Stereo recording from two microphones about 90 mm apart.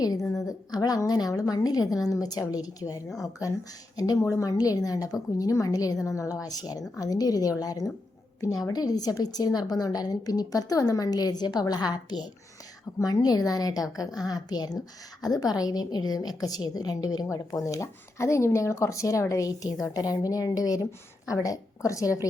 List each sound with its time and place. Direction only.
0.0 s a woman's voice: 45° left (ahead or behind)
17.2 s a woman's voice: 35° left (ahead or behind)